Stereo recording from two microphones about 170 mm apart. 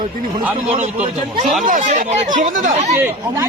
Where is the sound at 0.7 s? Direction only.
40° right (ahead or behind).